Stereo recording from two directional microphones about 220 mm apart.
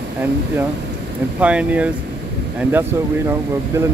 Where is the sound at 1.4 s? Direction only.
5° right (ahead or behind).